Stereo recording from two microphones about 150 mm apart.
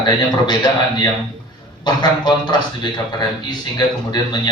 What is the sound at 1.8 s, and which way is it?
Speech, 30° left (ahead or behind).